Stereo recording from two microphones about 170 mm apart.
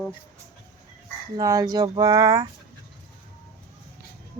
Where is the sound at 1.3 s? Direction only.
20° right (ahead or behind).